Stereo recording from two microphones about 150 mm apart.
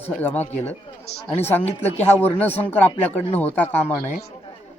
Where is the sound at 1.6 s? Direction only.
45° left (ahead or behind).